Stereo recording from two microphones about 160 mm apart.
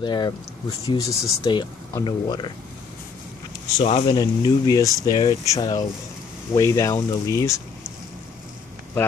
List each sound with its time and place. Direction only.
0.0 s speech: 25° left (ahead or behind)
3.8 s speech: 40° left (ahead or behind)
4.2 s speech: 25° left (ahead or behind)